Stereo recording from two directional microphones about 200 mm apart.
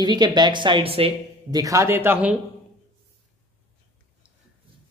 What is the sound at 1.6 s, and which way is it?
Speech, 15° right (ahead or behind).